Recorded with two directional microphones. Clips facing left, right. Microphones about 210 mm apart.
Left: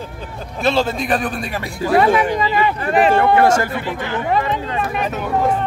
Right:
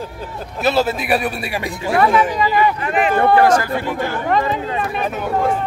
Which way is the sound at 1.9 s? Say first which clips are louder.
Left 1 dB; 25° left (ahead or behind).